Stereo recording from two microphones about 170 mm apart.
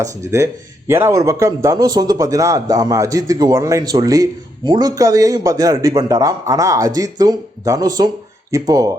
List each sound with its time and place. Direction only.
0.0 s a man's voice: 15° right (ahead or behind)